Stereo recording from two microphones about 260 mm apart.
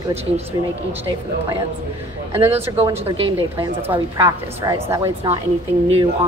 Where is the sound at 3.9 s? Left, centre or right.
Centre.